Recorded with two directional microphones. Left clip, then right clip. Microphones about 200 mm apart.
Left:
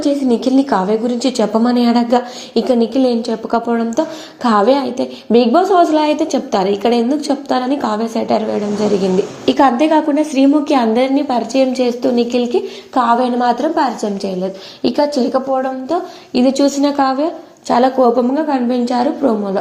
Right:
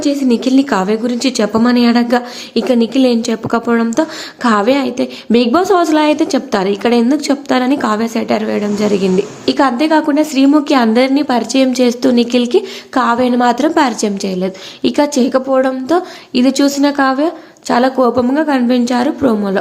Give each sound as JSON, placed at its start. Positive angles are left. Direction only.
{"t": 0.0, "sound": "a woman's voice", "side_deg": -10}